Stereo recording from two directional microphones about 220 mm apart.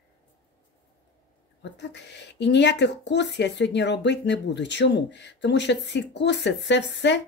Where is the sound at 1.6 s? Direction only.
55° left (ahead or behind).